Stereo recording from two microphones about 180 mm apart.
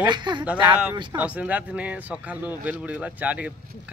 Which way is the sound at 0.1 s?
25° right (ahead or behind).